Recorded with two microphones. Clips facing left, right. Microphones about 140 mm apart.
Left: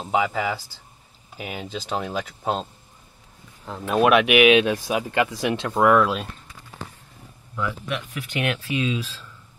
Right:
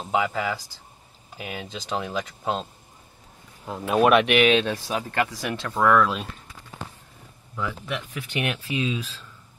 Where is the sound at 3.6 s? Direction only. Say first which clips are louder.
Even; 5° right (ahead or behind); by 6.1 s 15° left (ahead or behind).